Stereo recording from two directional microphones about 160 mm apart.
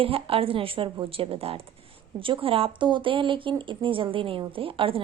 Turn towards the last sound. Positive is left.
turn(degrees=-35)  # may be behind; listen again after turning